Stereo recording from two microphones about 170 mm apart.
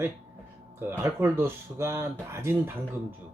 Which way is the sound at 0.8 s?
15° right (ahead or behind).